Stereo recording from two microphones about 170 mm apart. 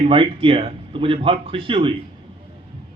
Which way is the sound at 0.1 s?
30° right (ahead or behind).